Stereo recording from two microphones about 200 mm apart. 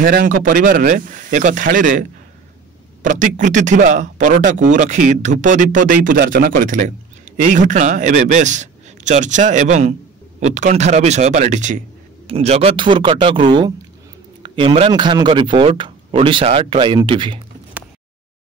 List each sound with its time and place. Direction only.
0.0 s a man's voice: 45° right (ahead or behind); by 17.4 s 25° right (ahead or behind)